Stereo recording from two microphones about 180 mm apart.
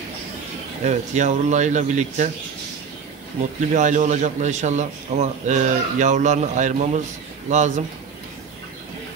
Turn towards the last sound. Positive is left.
turn(degrees=-40)  # may be behind; listen again after turning